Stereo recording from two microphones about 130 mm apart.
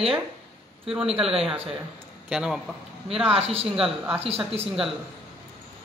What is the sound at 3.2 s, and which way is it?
Speech, 50° right (ahead or behind).